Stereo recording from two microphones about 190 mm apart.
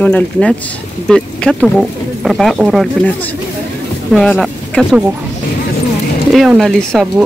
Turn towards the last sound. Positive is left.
turn(degrees=0)  # may be behind; listen again after turning